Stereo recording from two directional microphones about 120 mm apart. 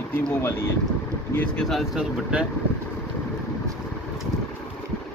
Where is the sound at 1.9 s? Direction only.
5° right (ahead or behind).